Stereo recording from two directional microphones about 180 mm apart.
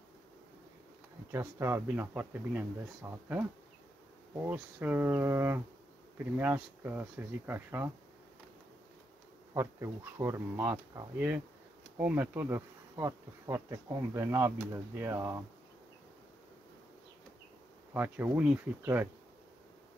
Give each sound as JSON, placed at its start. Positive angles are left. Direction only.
{"t": 1.3, "sound": "bee", "side_deg": -15}
{"t": 9.5, "sound": "bee", "side_deg": -15}
{"t": 17.9, "sound": "bee", "side_deg": -10}